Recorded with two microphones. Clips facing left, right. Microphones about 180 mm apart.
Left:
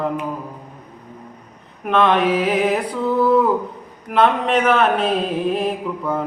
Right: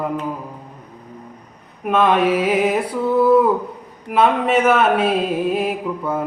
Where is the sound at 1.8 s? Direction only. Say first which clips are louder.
Right 1 dB; 10° right (ahead or behind).